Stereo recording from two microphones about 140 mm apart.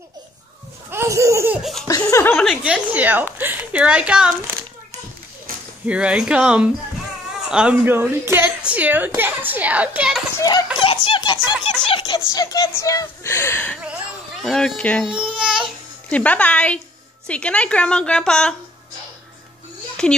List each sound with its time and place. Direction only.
0.8 s speech: 20° right (ahead or behind)
1.6 s speech: centre (ahead or behind)
1.9 s speech: 25° left (ahead or behind)
2.4 s a woman's voice: 5° right (ahead or behind)
5.9 s a woman's voice: 5° right (ahead or behind)
10.3 s speech: 25° left (ahead or behind)
10.8 s a sound: 40° left (ahead or behind)
11.9 s music: 30° left (ahead or behind)
12.4 s speech: 25° left (ahead or behind)
14.4 s speech: centre (ahead or behind)
15.3 s speech: 5° right (ahead or behind)
16.1 s a woman's voice: 10° left (ahead or behind)
20.0 s speech: 5° left (ahead or behind)